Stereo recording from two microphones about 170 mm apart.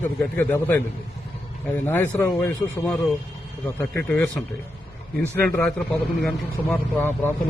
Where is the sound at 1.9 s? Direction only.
15° left (ahead or behind).